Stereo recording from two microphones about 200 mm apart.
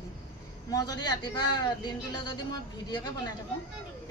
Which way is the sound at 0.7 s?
20° left (ahead or behind).